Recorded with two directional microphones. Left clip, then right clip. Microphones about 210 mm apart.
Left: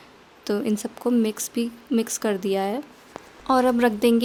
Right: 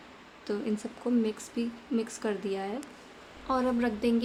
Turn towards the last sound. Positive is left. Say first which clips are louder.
# left 10 dB
turn(degrees=50)  # may be behind; listen again after turning